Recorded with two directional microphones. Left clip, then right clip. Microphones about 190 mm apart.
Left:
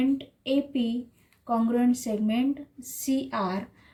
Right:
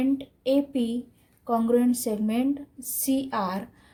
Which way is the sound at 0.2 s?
50° right (ahead or behind).